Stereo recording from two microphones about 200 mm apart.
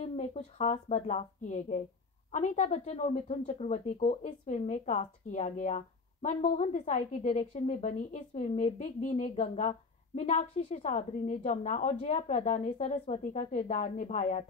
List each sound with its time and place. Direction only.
0.0 s a woman's voice: 35° left (ahead or behind)